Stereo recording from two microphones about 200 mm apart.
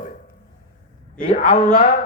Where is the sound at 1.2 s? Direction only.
45° left (ahead or behind).